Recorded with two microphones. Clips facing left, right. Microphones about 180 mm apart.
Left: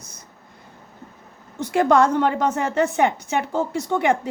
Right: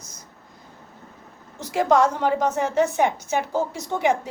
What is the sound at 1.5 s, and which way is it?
A woman's voice, 60° left (ahead or behind).